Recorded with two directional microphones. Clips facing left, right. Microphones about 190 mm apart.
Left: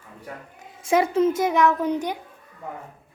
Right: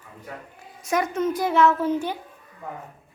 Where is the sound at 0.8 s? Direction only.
30° left (ahead or behind).